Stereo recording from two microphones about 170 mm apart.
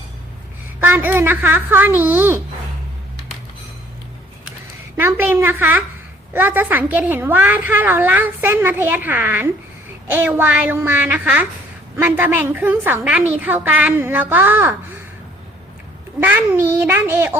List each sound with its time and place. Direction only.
0.8 s a woman's voice: 10° right (ahead or behind)
4.9 s a woman's voice: 10° right (ahead or behind)
16.2 s a woman's voice: 10° right (ahead or behind)